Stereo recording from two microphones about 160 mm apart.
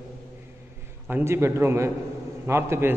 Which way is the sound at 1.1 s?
10° right (ahead or behind).